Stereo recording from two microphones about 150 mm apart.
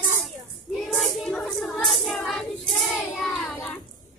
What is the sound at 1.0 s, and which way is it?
Child singing, centre (ahead or behind).